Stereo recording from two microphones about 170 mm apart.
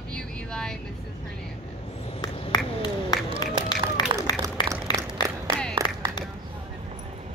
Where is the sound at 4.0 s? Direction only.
25° left (ahead or behind).